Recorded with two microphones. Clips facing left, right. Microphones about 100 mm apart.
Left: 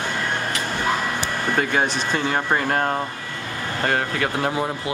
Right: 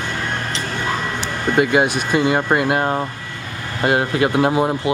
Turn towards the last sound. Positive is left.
turn(degrees=-20)  # may be behind; listen again after turning